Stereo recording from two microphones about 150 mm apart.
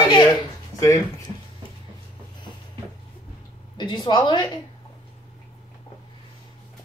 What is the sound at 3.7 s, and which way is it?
Speech, 30° left (ahead or behind).